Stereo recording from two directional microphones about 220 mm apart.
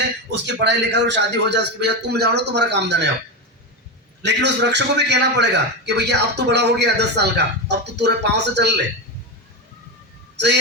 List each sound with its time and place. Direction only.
0.3 s a man's voice: 50° right (ahead or behind)
4.2 s a man's voice: 50° right (ahead or behind)
10.3 s speech: 50° right (ahead or behind)